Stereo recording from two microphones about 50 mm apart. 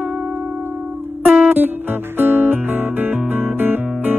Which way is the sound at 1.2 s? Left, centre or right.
Right.